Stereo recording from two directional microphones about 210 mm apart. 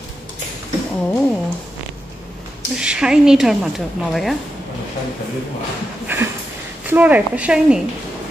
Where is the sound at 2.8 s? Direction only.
5° right (ahead or behind).